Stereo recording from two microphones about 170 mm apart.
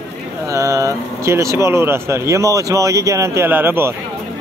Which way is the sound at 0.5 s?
20° right (ahead or behind).